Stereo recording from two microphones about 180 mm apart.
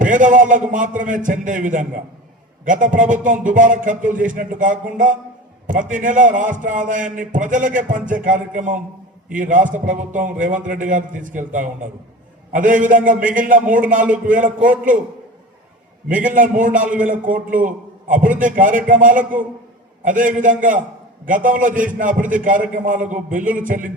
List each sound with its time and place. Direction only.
0.0 s a man's voice: 45° right (ahead or behind)
16.0 s a man's voice: 45° right (ahead or behind)